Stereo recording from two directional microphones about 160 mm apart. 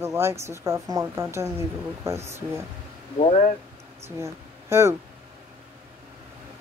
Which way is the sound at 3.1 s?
45° left (ahead or behind).